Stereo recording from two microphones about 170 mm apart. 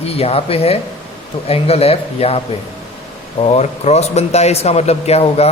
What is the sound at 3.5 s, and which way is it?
A man's voice, 40° left (ahead or behind).